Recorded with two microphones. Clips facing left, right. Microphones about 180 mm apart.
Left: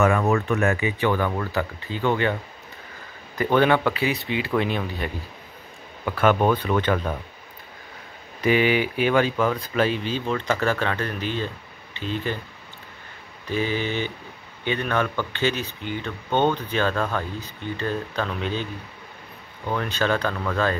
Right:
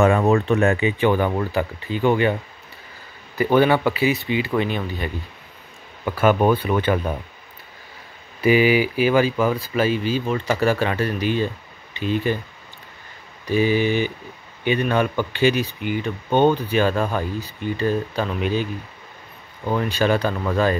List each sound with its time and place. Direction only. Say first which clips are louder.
0.0 s speech: right 4 dB; 30° right (ahead or behind); by 2.3 s 15° right (ahead or behind)
3.3 s speech: right 3 dB; 5° right (ahead or behind)
8.4 s speech: right 4 dB; 5° right (ahead or behind)
13.5 s speech: right 7 dB; 10° right (ahead or behind)